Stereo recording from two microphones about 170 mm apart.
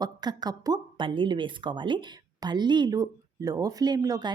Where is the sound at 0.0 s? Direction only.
25° right (ahead or behind).